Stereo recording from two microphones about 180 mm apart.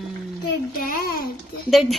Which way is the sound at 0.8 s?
55° left (ahead or behind).